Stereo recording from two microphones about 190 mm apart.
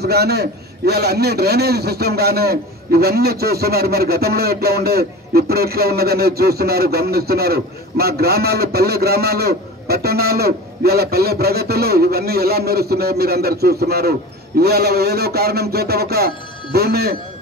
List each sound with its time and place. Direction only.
0.0 s a man's voice: 55° right (ahead or behind)